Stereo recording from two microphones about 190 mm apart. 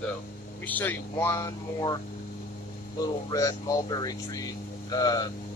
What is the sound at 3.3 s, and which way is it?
Speech, 15° left (ahead or behind).